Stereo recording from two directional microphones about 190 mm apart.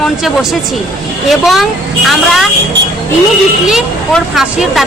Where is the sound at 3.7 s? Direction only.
Centre (ahead or behind).